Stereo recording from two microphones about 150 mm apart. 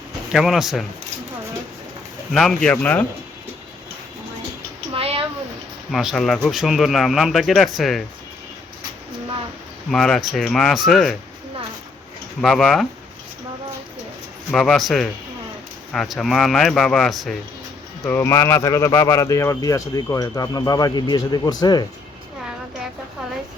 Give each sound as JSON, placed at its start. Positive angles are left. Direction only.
{"t": 0.3, "sound": "speech", "side_deg": 0}
{"t": 2.3, "sound": "speech", "side_deg": 5}
{"t": 4.9, "sound": "a sound", "side_deg": -40}
{"t": 5.9, "sound": "speech", "side_deg": 0}
{"t": 9.9, "sound": "speech", "side_deg": 5}
{"t": 12.4, "sound": "speech", "side_deg": 0}
{"t": 14.5, "sound": "speech", "side_deg": 0}
{"t": 18.2, "sound": "speech", "side_deg": 20}